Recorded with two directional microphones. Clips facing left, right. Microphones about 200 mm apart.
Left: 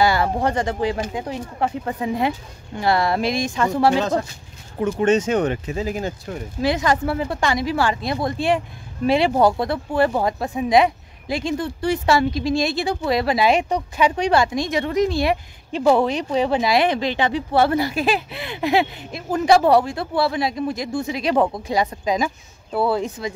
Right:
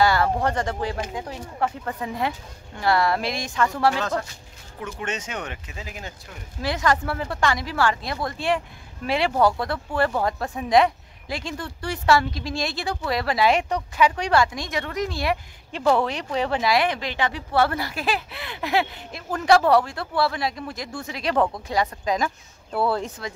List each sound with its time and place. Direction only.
0.0 s speech: 15° left (ahead or behind)
4.9 s speech: 35° left (ahead or behind)
6.6 s speech: 20° left (ahead or behind)